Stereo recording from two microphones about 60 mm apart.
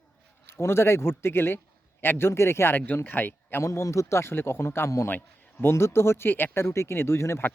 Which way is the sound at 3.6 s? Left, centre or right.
Left.